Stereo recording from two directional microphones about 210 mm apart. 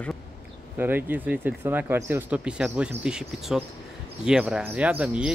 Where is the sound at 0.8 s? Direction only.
10° right (ahead or behind).